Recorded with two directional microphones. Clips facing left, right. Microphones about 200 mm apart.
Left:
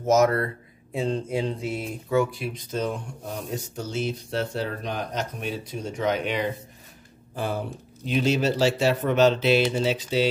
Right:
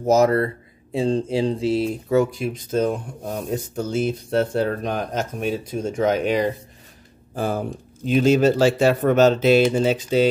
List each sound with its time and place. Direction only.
0.0 s speech: 35° right (ahead or behind)